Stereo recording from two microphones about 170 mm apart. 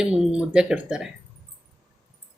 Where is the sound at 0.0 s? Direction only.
5° right (ahead or behind).